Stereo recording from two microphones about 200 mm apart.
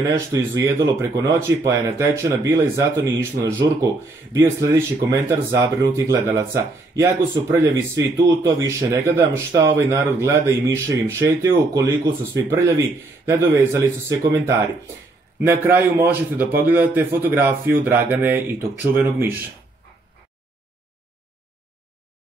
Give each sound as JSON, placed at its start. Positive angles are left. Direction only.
{"t": 0.1, "sound": "speech", "side_deg": -15}